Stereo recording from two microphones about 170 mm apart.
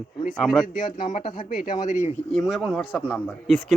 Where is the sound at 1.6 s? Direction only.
50° left (ahead or behind).